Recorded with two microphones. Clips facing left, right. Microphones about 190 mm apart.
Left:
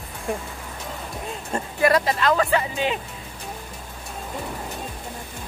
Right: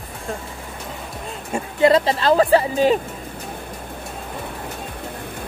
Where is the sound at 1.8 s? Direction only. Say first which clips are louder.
Right 4 dB; 25° right (ahead or behind).